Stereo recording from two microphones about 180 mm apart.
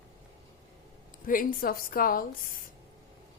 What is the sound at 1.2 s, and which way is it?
A woman's voice, 50° left (ahead or behind).